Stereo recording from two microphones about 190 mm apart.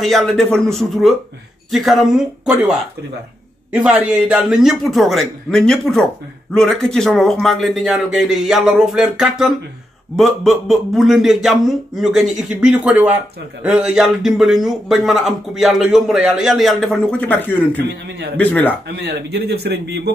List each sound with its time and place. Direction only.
0.0 s a man's voice: centre (ahead or behind)
3.7 s a man's voice: 5° right (ahead or behind)
17.8 s a man's voice: 60° right (ahead or behind)
18.4 s speech: 10° left (ahead or behind)
18.9 s a man's voice: 60° right (ahead or behind)